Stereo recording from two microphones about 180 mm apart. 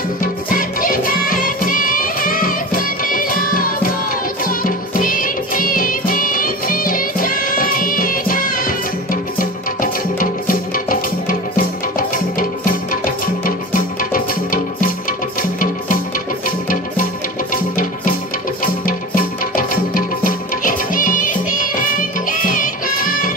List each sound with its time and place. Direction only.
0.2 s music: 50° left (ahead or behind)
16.4 s music: 50° left (ahead or behind)